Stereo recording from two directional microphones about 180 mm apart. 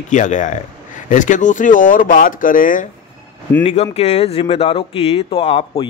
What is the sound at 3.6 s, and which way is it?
Speech, 35° left (ahead or behind).